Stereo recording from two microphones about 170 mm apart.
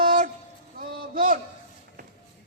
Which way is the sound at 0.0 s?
50° right (ahead or behind).